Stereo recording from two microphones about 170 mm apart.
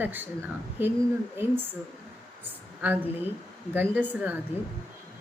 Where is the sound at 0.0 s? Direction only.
10° right (ahead or behind).